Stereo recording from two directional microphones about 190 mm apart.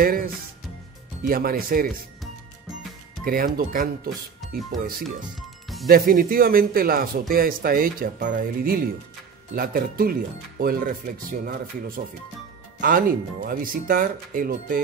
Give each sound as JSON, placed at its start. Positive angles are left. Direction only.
{"t": 0.0, "sound": "speech", "side_deg": -50}
{"t": 3.3, "sound": "speech", "side_deg": -50}